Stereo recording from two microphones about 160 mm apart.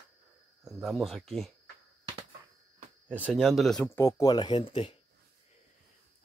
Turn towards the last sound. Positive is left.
turn(degrees=35)  # may be behind; listen again after turning